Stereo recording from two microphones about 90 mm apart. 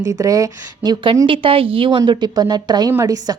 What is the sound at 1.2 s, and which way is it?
Speech, 80° right.